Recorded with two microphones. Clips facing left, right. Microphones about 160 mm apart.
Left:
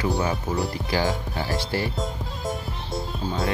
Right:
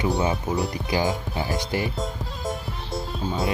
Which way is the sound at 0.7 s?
20° right (ahead or behind).